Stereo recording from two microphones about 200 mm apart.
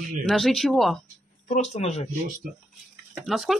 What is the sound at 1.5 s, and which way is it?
Speech, 30° left (ahead or behind).